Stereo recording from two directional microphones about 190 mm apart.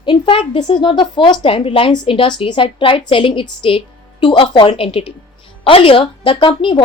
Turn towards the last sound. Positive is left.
turn(degrees=25)  # may be behind; listen again after turning